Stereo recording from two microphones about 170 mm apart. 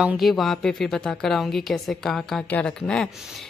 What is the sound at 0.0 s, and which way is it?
A woman's voice, centre (ahead or behind).